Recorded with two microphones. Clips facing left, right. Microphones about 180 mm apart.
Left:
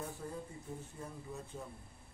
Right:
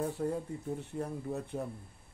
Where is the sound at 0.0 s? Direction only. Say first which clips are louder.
Right 10 dB; 65° right (ahead or behind).